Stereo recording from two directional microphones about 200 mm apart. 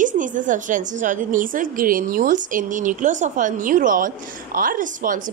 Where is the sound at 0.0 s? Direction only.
40° right (ahead or behind).